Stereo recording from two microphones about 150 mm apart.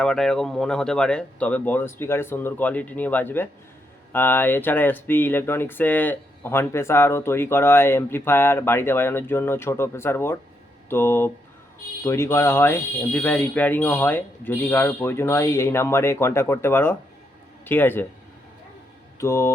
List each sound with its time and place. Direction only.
0.0 s speech: 5° left (ahead or behind)
19.2 s speech: 20° left (ahead or behind)